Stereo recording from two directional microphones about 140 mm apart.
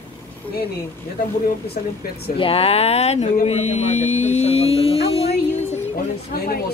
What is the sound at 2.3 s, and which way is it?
Speech, 40° left (ahead or behind).